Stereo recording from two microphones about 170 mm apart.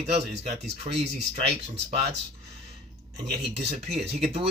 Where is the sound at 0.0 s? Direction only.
40° right (ahead or behind).